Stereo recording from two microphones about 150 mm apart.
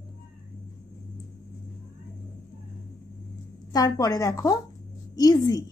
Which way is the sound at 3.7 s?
25° left (ahead or behind).